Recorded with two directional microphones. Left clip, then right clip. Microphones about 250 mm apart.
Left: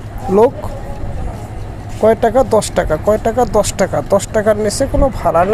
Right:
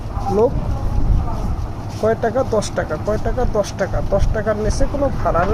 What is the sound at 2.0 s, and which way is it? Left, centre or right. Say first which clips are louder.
Speech: left 7 dB; left.